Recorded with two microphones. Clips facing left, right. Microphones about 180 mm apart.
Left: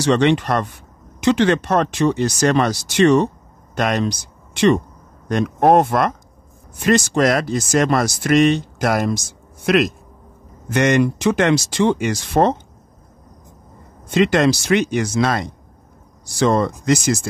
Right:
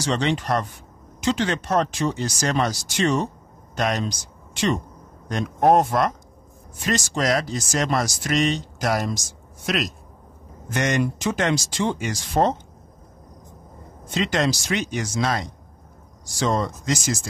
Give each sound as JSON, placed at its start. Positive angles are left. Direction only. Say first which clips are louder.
{"t": 0.0, "sound": "speech", "louder": "left 8 dB", "side_deg": 65}
{"t": 10.7, "sound": "speech", "louder": "left 7 dB", "side_deg": 70}
{"t": 14.1, "sound": "speech", "louder": "left 7 dB", "side_deg": 65}